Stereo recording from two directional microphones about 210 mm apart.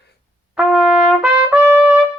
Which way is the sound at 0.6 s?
5° right (ahead or behind).